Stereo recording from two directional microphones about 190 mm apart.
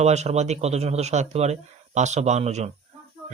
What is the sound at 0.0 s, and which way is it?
Speech, 35° right (ahead or behind).